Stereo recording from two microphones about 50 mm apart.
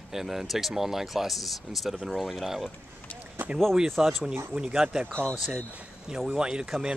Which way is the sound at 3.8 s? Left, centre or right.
Centre.